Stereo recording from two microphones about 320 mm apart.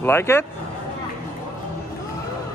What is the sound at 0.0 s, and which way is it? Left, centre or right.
Speech, centre.